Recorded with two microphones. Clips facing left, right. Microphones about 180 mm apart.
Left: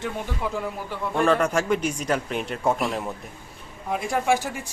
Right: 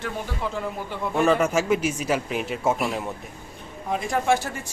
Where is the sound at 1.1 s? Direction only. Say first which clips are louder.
Right 1 dB; 5° right (ahead or behind).